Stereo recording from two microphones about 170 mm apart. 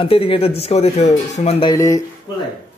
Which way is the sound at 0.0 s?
35° left (ahead or behind).